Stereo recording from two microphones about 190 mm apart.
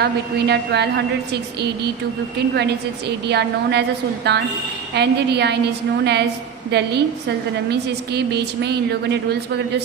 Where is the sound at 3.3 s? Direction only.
60° right (ahead or behind).